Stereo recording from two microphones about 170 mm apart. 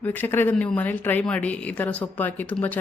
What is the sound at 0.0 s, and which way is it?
Speech, 10° left (ahead or behind).